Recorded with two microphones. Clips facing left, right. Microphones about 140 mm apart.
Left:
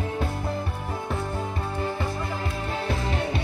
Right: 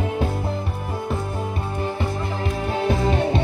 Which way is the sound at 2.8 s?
25° right (ahead or behind).